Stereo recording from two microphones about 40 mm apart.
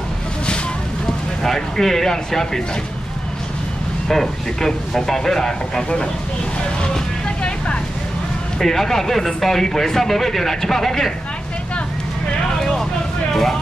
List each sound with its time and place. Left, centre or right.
1.4 s speech: centre
4.1 s speech: centre
6.8 s vehicle: left
8.5 s speech: centre
12.5 s vehicle: centre
13.3 s speech: centre